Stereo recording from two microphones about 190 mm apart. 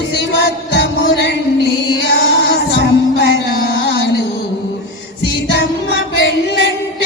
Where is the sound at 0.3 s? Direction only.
65° left (ahead or behind).